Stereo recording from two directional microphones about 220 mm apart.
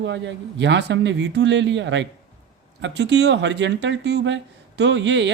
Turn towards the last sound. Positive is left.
turn(degrees=-55)  # may be behind; listen again after turning